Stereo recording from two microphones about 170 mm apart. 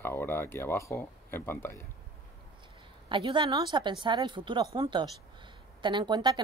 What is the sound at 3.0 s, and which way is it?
Speech, 30° right (ahead or behind).